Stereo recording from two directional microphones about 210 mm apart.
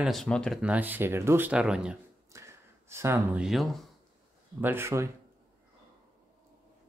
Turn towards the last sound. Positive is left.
turn(degrees=-10)  # may be behind; listen again after turning